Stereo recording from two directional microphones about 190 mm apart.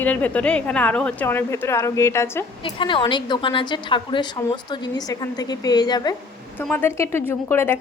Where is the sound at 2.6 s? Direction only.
25° left (ahead or behind).